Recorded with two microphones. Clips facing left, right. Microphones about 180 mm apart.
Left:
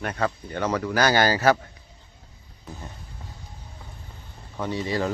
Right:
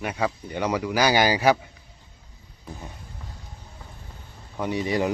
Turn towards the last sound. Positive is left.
turn(degrees=-15)  # may be behind; listen again after turning